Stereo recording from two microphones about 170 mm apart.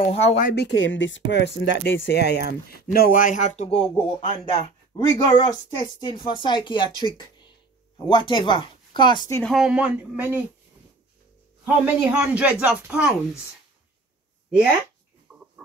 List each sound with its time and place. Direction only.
0.0 s speech: 35° left (ahead or behind)
0.6 s speech: 90° left; by 7.1 s 30° left (ahead or behind)
8.1 s speech: 25° left (ahead or behind)
9.4 s speech: centre (ahead or behind)
11.6 s speech: 10° right (ahead or behind)
15.3 s a sound: 5° right (ahead or behind)